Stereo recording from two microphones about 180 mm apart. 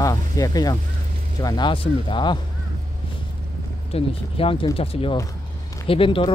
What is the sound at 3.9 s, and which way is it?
Speech, 30° left (ahead or behind).